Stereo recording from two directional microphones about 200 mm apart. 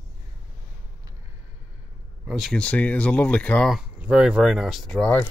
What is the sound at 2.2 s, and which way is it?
Speech, centre (ahead or behind).